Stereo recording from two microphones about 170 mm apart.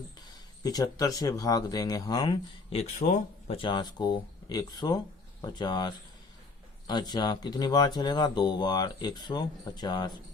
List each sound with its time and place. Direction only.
0.6 s speech: 20° left (ahead or behind)
2.7 s speech: 40° left (ahead or behind)
3.6 s speech: 25° left (ahead or behind)